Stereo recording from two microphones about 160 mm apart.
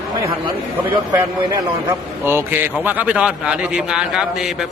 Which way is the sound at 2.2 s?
15° right (ahead or behind).